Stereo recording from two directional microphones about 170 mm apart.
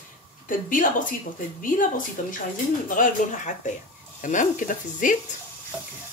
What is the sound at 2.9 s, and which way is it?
Speech, 50° left (ahead or behind).